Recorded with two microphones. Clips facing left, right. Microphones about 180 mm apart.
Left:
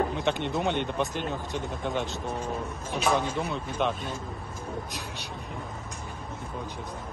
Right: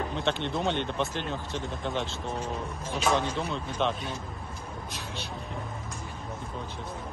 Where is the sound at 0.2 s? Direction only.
15° left (ahead or behind).